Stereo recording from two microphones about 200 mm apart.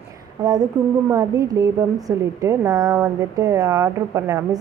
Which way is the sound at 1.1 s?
15° right (ahead or behind).